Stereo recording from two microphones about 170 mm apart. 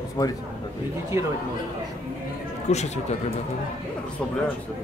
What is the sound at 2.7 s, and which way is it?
Speech, 40° left (ahead or behind).